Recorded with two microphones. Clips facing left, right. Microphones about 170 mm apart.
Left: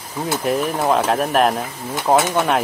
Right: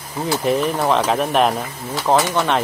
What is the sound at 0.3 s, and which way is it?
Speech, centre (ahead or behind).